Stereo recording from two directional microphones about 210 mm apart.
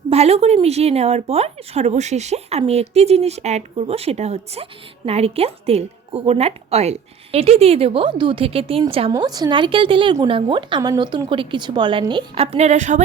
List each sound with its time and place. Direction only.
0.1 s speech: 30° right (ahead or behind)